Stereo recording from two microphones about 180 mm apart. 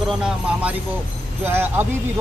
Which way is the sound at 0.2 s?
5° right (ahead or behind).